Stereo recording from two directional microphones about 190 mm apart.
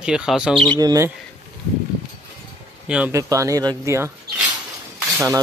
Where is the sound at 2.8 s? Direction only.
5° right (ahead or behind).